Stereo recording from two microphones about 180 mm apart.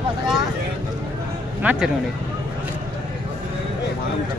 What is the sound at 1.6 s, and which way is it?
Speech, 10° right (ahead or behind).